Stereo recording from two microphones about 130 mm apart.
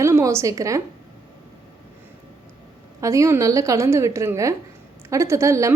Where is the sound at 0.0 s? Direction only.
20° right (ahead or behind).